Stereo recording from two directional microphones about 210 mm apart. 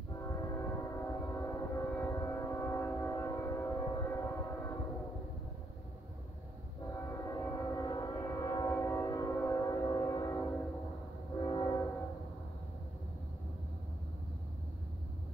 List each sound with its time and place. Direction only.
0.1 s train: 15° left (ahead or behind)
6.9 s train: 15° left (ahead or behind)